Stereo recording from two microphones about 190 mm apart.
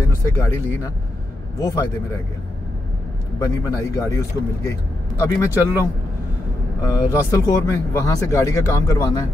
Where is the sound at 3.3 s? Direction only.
15° left (ahead or behind).